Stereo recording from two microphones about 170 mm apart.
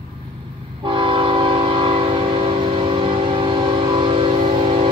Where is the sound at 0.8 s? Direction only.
30° right (ahead or behind).